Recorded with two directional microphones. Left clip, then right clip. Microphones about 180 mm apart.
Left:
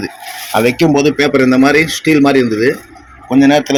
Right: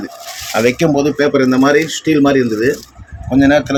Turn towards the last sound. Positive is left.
turn(degrees=5)  # may be behind; listen again after turning